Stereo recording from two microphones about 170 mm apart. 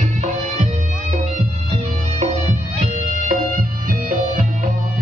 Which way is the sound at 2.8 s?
50° right (ahead or behind).